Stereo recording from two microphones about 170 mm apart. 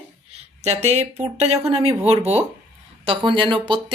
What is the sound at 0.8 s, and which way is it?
A woman's voice, 40° right (ahead or behind).